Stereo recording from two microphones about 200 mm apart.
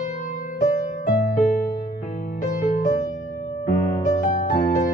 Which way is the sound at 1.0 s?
50° left (ahead or behind).